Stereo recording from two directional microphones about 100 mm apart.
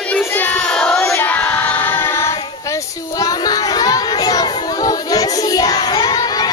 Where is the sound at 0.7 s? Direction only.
10° left (ahead or behind).